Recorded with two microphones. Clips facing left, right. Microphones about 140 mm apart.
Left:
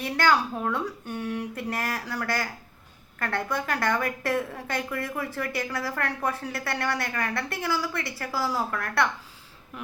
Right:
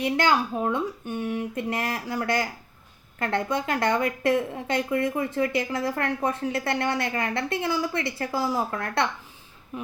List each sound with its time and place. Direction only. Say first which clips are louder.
0.0 s speech: right 1 dB; 20° right (ahead or behind)